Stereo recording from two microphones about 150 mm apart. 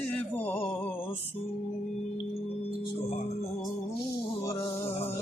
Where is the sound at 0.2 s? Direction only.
10° left (ahead or behind).